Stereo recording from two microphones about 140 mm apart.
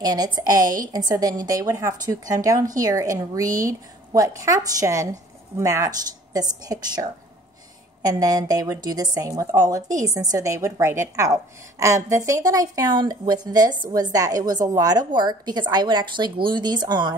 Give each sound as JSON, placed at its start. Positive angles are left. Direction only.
{"t": 0.0, "sound": "a woman's voice", "side_deg": -30}